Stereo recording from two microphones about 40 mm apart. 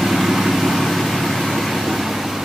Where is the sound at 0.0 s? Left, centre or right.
Centre.